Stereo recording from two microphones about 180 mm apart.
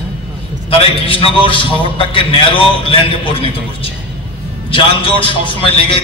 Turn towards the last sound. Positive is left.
turn(degrees=30)  # may be behind; listen again after turning